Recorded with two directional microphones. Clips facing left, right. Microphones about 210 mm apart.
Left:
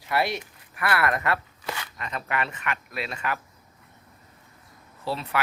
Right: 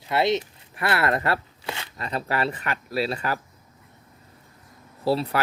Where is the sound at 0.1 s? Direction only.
25° right (ahead or behind).